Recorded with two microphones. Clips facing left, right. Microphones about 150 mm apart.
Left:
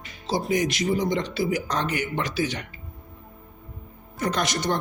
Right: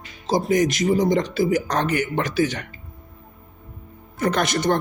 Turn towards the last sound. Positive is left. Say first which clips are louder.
# right 5 dB
turn(degrees=-55)  # may be behind; listen again after turning